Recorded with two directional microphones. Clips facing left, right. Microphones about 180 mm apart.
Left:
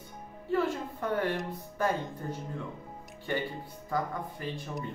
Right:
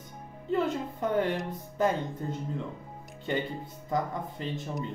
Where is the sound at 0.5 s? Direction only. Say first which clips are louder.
Right 1 dB; 20° right (ahead or behind).